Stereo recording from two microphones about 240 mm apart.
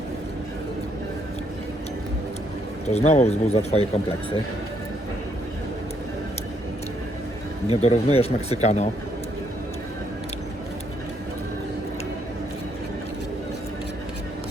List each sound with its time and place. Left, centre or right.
2.9 s speech: left
7.7 s speech: left